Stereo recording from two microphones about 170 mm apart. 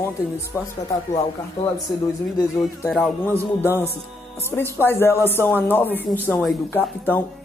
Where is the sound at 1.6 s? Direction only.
40° left (ahead or behind).